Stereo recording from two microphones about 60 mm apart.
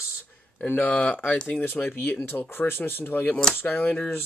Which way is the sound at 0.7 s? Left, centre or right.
Left.